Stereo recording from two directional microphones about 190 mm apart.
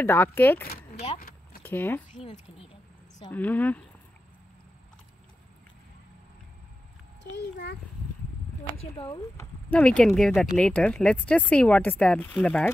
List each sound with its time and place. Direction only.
0.0 s speech: 10° left (ahead or behind)
0.9 s speech: 35° left (ahead or behind)
1.6 s speech: 10° left (ahead or behind)
2.1 s speech: 40° left (ahead or behind)
3.3 s speech: 10° left (ahead or behind)
7.3 s a child's voice: 65° left (ahead or behind)
9.0 s speech: 30° left (ahead or behind)
9.4 s speech: 5° left (ahead or behind)